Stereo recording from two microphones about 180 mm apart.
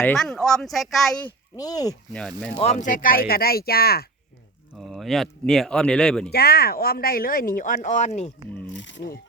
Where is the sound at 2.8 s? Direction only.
50° left (ahead or behind).